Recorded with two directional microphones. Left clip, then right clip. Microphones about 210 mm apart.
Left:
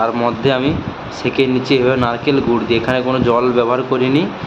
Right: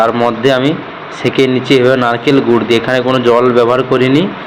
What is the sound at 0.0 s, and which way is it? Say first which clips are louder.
Speech: right 5 dB; 10° right (ahead or behind).